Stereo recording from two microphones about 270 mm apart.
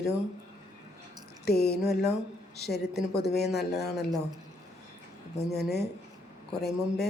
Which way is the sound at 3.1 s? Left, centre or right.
Left.